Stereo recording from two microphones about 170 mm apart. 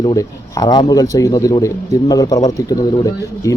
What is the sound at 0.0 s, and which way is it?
Speech, 25° left (ahead or behind).